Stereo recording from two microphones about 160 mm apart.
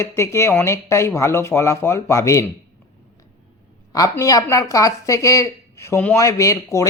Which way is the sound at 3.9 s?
20° left (ahead or behind).